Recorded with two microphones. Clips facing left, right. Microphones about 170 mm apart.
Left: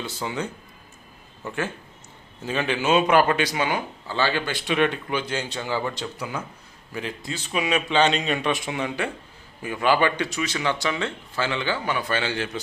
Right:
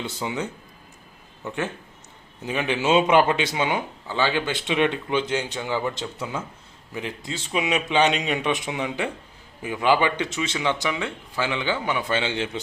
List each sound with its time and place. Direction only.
0.0 s speech: 20° right (ahead or behind)
2.4 s speech: 15° right (ahead or behind)